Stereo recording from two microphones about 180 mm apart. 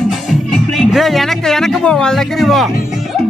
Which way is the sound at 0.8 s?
Centre (ahead or behind).